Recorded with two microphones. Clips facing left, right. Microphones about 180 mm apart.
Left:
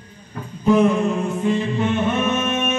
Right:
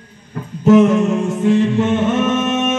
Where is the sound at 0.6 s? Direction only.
90° right.